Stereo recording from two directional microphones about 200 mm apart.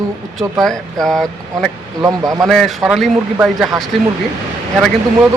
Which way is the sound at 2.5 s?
Centre (ahead or behind).